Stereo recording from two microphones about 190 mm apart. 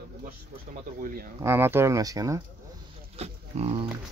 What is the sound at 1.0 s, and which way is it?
Speech, 50° right (ahead or behind).